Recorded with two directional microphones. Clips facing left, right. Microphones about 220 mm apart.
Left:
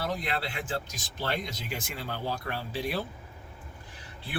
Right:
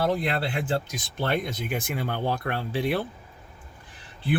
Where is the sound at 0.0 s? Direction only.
55° right (ahead or behind).